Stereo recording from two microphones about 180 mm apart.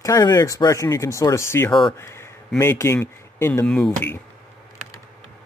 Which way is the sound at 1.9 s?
15° left (ahead or behind).